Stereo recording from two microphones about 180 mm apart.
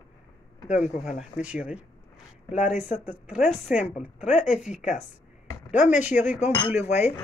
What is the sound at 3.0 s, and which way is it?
Speech, 5° right (ahead or behind).